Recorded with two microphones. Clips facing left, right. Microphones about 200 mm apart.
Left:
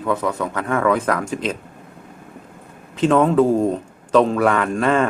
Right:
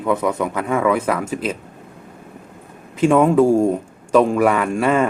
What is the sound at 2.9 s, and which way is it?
Speech, 10° right (ahead or behind).